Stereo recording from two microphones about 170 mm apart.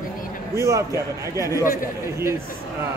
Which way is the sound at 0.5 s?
15° right (ahead or behind).